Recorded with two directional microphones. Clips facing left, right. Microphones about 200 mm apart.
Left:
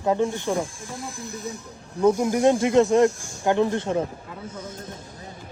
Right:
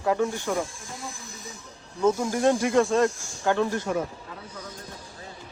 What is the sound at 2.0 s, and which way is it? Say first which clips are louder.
Speech: left 3 dB; 20° left (ahead or behind).